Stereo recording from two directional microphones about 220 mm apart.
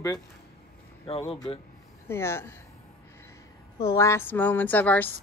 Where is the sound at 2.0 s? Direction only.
10° left (ahead or behind).